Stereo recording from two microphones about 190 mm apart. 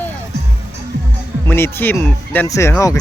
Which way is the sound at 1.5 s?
10° left (ahead or behind).